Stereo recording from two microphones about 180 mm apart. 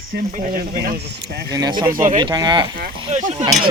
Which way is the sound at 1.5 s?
20° right (ahead or behind).